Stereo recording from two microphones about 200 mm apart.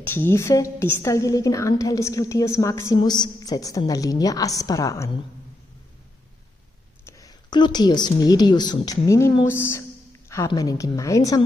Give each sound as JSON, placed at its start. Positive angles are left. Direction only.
{"t": 0.0, "sound": "a woman's voice", "side_deg": 10}
{"t": 7.1, "sound": "a woman's voice", "side_deg": 20}